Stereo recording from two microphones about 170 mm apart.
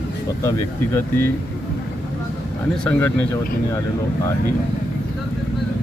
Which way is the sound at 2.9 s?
10° left (ahead or behind).